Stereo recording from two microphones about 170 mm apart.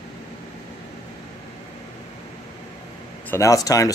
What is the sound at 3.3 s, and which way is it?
Speech, 20° left (ahead or behind).